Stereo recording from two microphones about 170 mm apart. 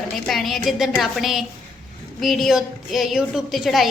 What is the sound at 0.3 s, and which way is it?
A woman's voice, centre (ahead or behind).